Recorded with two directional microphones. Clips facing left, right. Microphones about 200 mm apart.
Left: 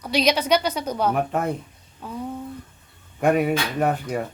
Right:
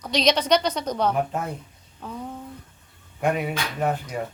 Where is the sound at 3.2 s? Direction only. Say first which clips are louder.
Left 5 dB; 50° left (ahead or behind).